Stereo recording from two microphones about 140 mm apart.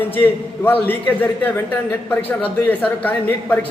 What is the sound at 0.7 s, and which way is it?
A man's voice, 15° left (ahead or behind).